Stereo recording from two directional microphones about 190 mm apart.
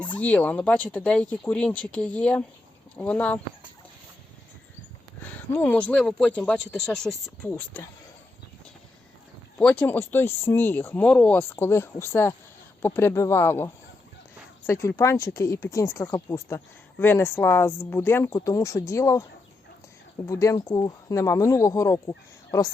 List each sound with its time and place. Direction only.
0.2 s speech: 5° left (ahead or behind)
5.2 s speech: 10° left (ahead or behind)
9.6 s speech: 5° left (ahead or behind)
14.7 s speech: 15° left (ahead or behind)